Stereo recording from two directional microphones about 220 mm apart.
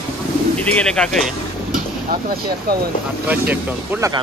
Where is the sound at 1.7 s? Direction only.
40° right (ahead or behind).